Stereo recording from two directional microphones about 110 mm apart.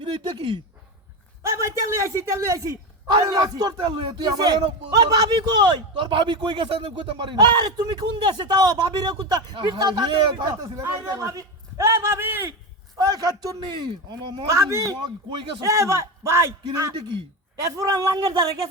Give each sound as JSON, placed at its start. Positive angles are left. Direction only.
{"t": 0.0, "sound": "speech", "side_deg": -45}
{"t": 1.4, "sound": "a man's voice", "side_deg": -25}
{"t": 6.7, "sound": "a man's voice", "side_deg": -60}
{"t": 13.0, "sound": "a man's voice", "side_deg": -35}
{"t": 14.4, "sound": "a man's voice", "side_deg": -30}
{"t": 16.6, "sound": "a man's voice", "side_deg": -35}